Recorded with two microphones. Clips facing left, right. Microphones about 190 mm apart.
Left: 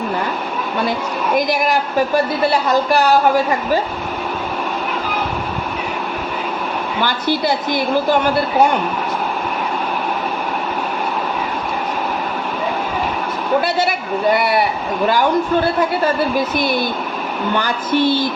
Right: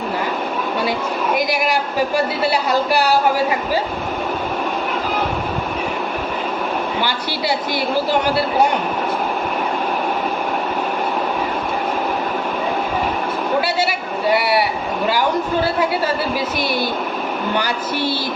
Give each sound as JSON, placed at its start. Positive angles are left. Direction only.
{"t": 7.0, "sound": "a woman's voice", "side_deg": 50}
{"t": 17.6, "sound": "speech", "side_deg": -10}